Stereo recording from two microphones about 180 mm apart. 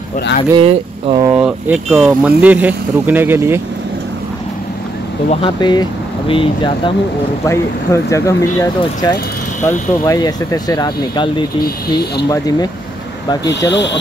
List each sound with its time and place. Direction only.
0.6 s speech: 30° right (ahead or behind)
1.3 s speech: 10° right (ahead or behind)
5.3 s speech: 25° left (ahead or behind)
7.4 s speech: 15° left (ahead or behind)
13.7 s speech: 75° left (ahead or behind)